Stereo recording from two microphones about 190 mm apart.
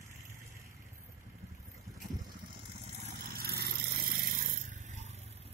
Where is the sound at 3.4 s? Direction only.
55° right (ahead or behind); by 5.1 s 40° right (ahead or behind).